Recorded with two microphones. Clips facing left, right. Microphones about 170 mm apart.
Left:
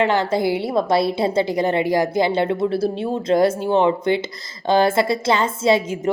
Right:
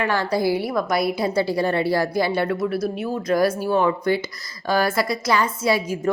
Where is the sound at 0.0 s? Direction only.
20° left (ahead or behind).